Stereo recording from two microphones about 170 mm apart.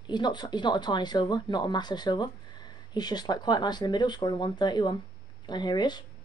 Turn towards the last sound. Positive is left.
turn(degrees=25)  # may be behind; listen again after turning